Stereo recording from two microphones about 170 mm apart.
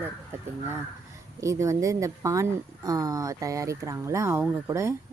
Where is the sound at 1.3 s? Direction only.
15° right (ahead or behind).